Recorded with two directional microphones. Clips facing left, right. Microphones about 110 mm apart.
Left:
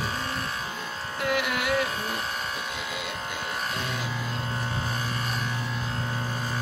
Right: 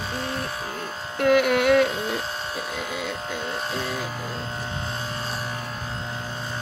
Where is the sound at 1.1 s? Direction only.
55° right (ahead or behind).